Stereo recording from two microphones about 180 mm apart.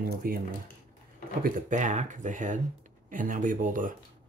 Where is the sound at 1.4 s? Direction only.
45° right (ahead or behind).